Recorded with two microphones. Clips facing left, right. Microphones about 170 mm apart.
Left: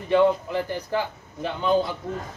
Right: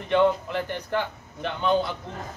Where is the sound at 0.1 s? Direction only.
10° left (ahead or behind).